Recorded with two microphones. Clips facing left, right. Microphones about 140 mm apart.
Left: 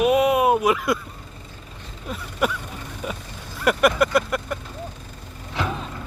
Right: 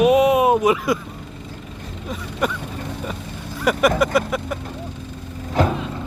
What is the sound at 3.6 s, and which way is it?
Speech, centre (ahead or behind).